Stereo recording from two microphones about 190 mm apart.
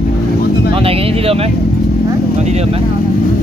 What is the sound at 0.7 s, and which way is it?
Speech, 30° right (ahead or behind).